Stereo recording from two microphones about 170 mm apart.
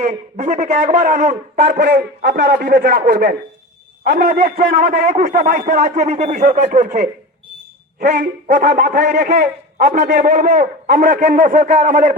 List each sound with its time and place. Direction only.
0.0 s a man's voice: 45° right (ahead or behind)
1.8 s a man's voice: 70° right (ahead or behind); by 6.8 s 45° right (ahead or behind)
8.1 s speech: 55° right (ahead or behind)
9.1 s a man's voice: 70° right (ahead or behind)
10.2 s a man's voice: 55° right (ahead or behind)